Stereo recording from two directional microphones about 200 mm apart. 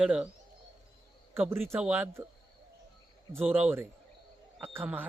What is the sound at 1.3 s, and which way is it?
Speech, 10° right (ahead or behind).